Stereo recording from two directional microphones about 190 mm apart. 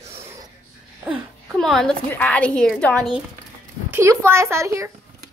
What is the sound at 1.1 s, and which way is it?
A woman's voice, centre (ahead or behind).